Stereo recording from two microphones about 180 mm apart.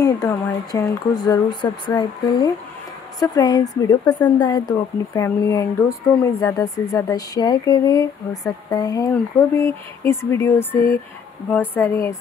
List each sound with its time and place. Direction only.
0.0 s a sound: 20° left (ahead or behind)
0.7 s speech: 20° left (ahead or behind)
11.5 s speech: 10° left (ahead or behind)